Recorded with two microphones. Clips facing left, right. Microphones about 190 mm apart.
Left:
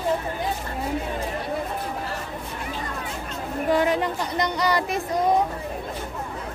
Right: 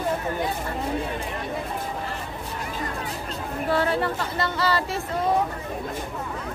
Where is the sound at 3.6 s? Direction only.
15° left (ahead or behind).